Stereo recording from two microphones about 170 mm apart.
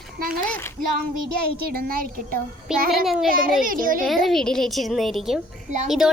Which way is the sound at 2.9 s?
Centre (ahead or behind).